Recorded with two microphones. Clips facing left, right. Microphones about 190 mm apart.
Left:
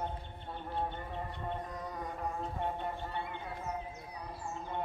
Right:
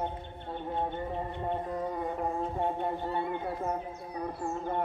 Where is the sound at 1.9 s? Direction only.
50° right (ahead or behind).